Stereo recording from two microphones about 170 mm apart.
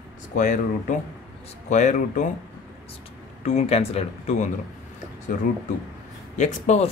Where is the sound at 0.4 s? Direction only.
45° left (ahead or behind).